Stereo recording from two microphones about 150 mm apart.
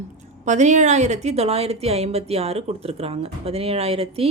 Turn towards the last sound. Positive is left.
turn(degrees=-40)  # may be behind; listen again after turning